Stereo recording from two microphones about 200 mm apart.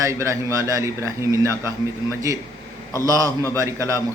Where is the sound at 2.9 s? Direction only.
15° right (ahead or behind).